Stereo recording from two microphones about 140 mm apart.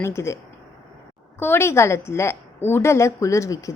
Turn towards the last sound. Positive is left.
turn(degrees=25)  # may be behind; listen again after turning